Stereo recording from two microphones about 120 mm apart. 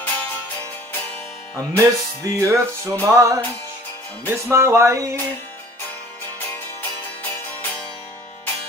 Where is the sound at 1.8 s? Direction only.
25° right (ahead or behind).